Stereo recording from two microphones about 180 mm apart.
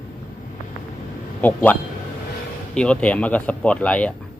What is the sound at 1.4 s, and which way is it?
Speech, 10° left (ahead or behind).